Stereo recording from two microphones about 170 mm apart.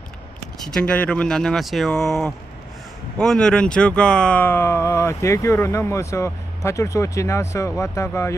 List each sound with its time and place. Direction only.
0.7 s speech: 5° left (ahead or behind)